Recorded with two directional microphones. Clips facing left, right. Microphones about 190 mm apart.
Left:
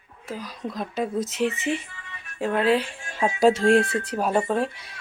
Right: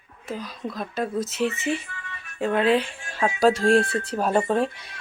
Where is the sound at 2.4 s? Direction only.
5° left (ahead or behind).